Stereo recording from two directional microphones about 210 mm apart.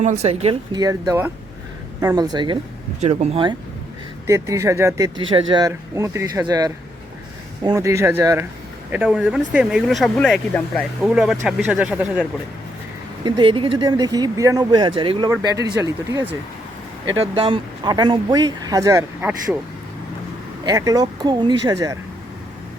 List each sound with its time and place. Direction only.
0.0 s speech: 30° right (ahead or behind)
3.0 s speech: 30° right (ahead or behind)
4.3 s speech: 15° right (ahead or behind)
13.2 s speech: 20° right (ahead or behind)
20.7 s speech: 15° right (ahead or behind)